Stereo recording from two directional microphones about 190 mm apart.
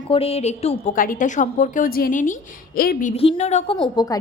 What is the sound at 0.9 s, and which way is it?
A woman's voice, 45° left (ahead or behind).